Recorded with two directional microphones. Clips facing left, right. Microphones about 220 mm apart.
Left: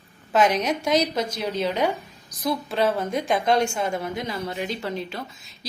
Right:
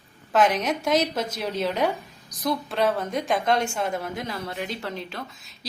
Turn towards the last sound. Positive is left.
turn(degrees=0)  # may be behind; listen again after turning